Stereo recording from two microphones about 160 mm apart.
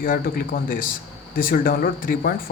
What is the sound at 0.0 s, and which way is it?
Speech, 60° left (ahead or behind).